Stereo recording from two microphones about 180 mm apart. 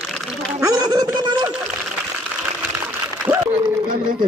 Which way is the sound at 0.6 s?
20° right (ahead or behind).